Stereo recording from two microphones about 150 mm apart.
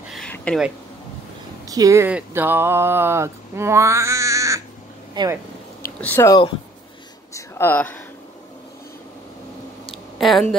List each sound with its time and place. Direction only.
0.5 s speech: 10° left (ahead or behind)
1.7 s speech: 20° right (ahead or behind)
2.0 s speech: 10° right (ahead or behind); by 5.3 s 30° right (ahead or behind)
5.9 s speech: 10° left (ahead or behind)
6.2 s speech: 25° left (ahead or behind)
7.3 s speech: 15° left (ahead or behind)
10.1 s speech: centre (ahead or behind)